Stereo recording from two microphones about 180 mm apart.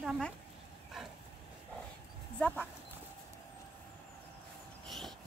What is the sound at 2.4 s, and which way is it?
Speech, 10° left (ahead or behind).